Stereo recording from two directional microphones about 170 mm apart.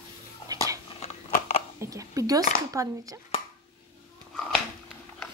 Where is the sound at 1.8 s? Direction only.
20° right (ahead or behind).